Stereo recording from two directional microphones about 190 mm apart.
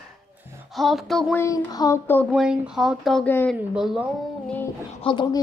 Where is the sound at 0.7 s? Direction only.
Centre (ahead or behind).